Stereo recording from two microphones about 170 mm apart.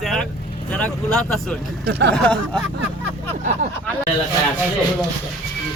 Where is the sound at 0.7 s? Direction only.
5° left (ahead or behind).